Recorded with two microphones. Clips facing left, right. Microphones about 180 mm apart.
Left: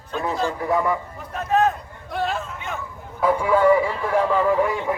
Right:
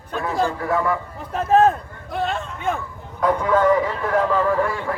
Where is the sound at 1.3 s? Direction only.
30° right (ahead or behind).